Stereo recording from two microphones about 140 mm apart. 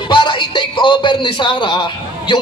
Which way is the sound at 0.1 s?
35° left (ahead or behind).